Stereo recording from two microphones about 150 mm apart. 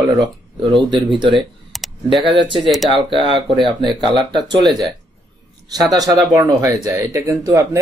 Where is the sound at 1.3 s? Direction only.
Centre (ahead or behind).